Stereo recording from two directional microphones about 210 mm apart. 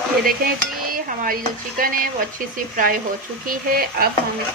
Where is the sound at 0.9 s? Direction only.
40° right (ahead or behind).